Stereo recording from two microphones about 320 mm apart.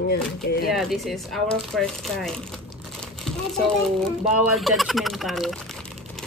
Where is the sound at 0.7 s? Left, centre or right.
Centre.